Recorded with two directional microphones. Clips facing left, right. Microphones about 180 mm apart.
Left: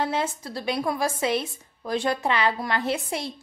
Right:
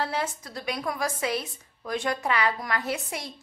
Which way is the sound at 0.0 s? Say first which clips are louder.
Left 3 dB; 25° left (ahead or behind).